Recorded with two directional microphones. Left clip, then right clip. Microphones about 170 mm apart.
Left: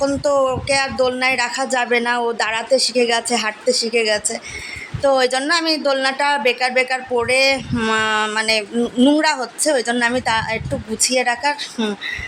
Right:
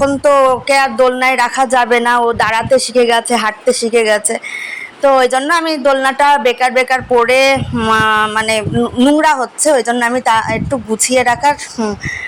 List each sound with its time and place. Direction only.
0.0 s speech: 25° right (ahead or behind)
7.8 s speech: 10° right (ahead or behind)
8.4 s speech: 20° right (ahead or behind)
9.0 s speech: 10° right (ahead or behind)
9.2 s speech: 20° right (ahead or behind)